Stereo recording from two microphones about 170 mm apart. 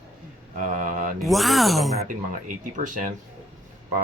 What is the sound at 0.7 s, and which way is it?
Mantra, 50° right (ahead or behind).